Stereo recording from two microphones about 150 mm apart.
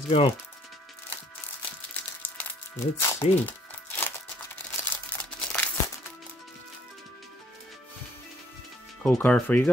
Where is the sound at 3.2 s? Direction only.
40° left (ahead or behind).